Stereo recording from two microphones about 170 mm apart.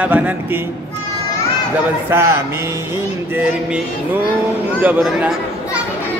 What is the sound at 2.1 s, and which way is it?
Speech, 15° right (ahead or behind).